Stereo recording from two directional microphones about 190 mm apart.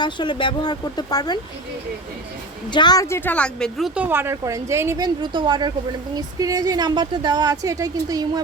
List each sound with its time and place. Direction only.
0.0 s speech: 25° left (ahead or behind)
2.7 s a woman's voice: 20° left (ahead or behind); by 8.3 s 20° right (ahead or behind)